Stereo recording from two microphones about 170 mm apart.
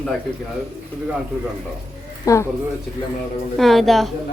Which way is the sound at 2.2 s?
20° left (ahead or behind).